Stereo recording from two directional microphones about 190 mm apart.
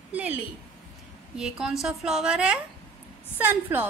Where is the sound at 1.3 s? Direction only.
5° right (ahead or behind).